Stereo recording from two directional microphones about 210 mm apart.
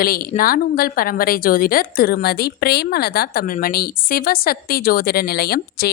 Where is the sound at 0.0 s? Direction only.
45° left (ahead or behind).